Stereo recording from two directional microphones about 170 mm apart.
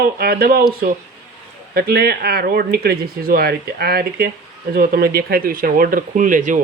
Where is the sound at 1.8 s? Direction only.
65° right (ahead or behind).